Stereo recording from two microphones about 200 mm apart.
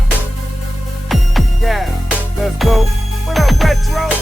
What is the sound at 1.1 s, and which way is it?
Music, centre (ahead or behind).